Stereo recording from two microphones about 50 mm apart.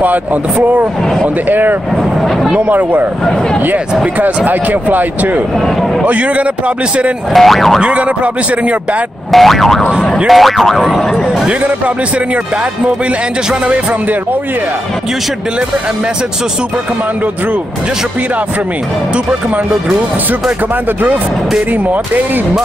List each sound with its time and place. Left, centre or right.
0.7 s speech: right
4.5 s speech: right
7.3 s speech: centre
7.8 s speech: right
9.3 s speech: centre